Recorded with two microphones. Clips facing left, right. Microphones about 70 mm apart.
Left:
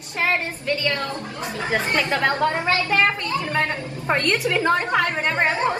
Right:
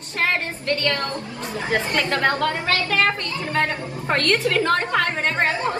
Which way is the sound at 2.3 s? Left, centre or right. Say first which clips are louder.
Left 1 dB; left.